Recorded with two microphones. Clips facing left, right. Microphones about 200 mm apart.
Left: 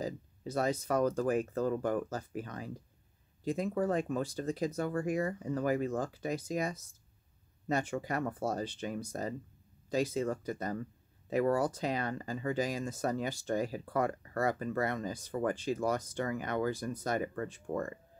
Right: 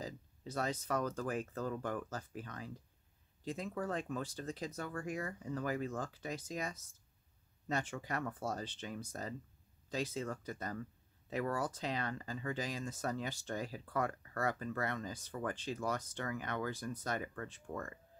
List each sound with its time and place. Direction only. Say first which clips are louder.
0.5 s speech: left 6 dB; 10° left (ahead or behind)